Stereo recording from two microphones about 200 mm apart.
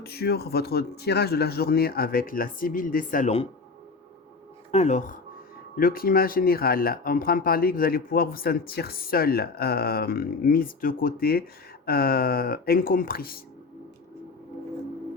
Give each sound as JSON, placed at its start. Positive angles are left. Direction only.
{"t": 0.0, "sound": "speech", "side_deg": 50}
{"t": 4.7, "sound": "speech", "side_deg": 35}